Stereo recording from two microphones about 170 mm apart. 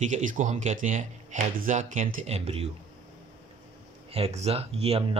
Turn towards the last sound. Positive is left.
turn(degrees=-35)  # may be behind; listen again after turning